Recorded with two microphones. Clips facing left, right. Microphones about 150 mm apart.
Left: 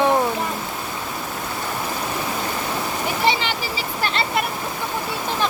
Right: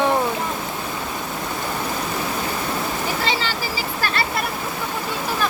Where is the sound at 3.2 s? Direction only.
20° left (ahead or behind).